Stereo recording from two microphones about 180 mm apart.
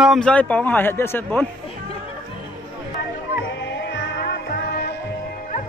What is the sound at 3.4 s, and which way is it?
Music, 75° left (ahead or behind).